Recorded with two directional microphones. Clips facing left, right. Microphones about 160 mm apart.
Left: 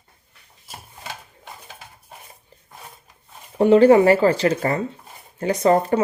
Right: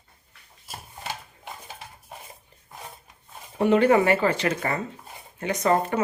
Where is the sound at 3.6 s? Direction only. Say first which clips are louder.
Left 6 dB; 35° left (ahead or behind).